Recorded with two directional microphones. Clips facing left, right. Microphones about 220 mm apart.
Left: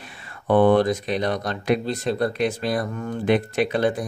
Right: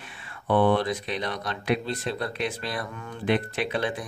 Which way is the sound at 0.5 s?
45° left (ahead or behind).